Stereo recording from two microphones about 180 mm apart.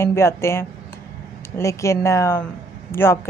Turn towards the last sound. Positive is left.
turn(degrees=15)  # may be behind; listen again after turning